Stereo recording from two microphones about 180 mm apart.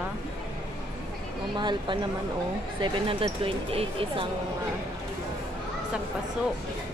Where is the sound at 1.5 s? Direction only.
25° right (ahead or behind).